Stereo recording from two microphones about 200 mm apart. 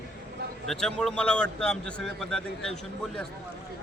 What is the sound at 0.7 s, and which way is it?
A man's voice, centre (ahead or behind).